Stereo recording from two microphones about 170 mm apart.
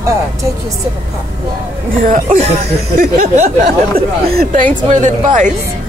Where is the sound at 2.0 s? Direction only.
50° right (ahead or behind).